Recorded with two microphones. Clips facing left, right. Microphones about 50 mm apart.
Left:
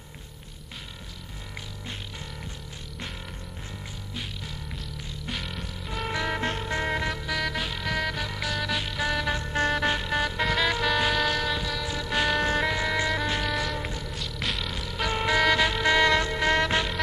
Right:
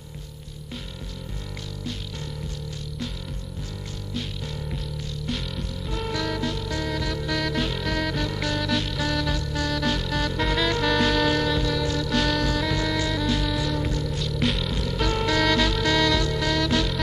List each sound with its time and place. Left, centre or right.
5.2 s music: centre
6.0 s music: left
7.2 s music: centre
12.0 s music: centre
12.4 s music: left
13.5 s music: centre
13.7 s music: centre
14.1 s music: centre; by 17.0 s left